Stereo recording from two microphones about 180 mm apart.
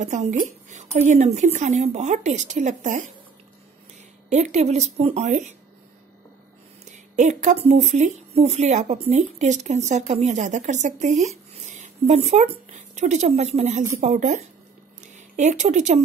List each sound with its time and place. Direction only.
0.0 s speech: 40° right (ahead or behind)
4.3 s speech: 40° right (ahead or behind)
6.8 s a woman's voice: 45° right (ahead or behind)